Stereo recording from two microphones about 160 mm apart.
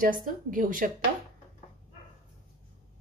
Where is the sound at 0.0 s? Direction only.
60° right (ahead or behind).